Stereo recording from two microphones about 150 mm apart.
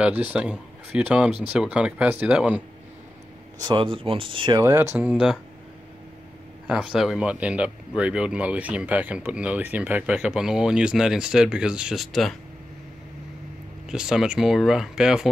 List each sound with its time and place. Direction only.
0.0 s speech: 10° right (ahead or behind)
3.5 s speech: 30° right (ahead or behind)
4.6 s speech: 20° right (ahead or behind)
4.9 s speech: 5° right (ahead or behind)
6.7 s speech: 5° right (ahead or behind)
13.8 s speech: 5° right (ahead or behind)